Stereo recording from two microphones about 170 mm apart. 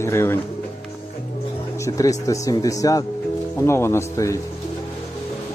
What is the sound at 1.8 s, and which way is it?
A man's voice, 20° left (ahead or behind).